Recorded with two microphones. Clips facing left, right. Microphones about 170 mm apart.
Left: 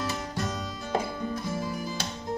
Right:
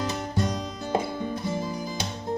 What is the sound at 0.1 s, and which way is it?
Music, 20° right (ahead or behind).